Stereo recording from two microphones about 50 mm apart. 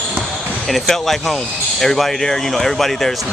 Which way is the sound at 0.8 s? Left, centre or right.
Centre.